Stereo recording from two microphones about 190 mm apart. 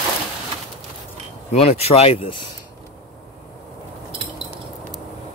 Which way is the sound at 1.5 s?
35° left (ahead or behind).